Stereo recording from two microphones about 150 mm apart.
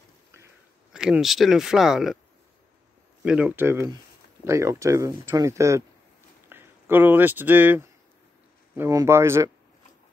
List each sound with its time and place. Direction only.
0.9 s speech: 5° right (ahead or behind)
3.3 s speech: 10° right (ahead or behind)